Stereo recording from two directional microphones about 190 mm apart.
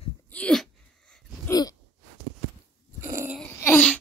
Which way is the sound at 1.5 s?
20° left (ahead or behind).